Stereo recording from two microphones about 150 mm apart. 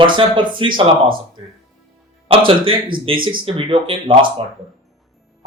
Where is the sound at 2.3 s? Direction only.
35° right (ahead or behind).